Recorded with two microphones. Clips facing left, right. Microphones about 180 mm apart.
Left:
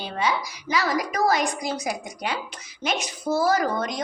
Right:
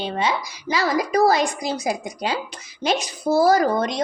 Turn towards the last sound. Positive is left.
turn(degrees=-35)  # may be behind; listen again after turning